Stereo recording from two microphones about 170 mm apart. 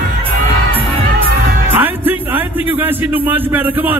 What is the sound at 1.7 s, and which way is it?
Speech, 10° right (ahead or behind).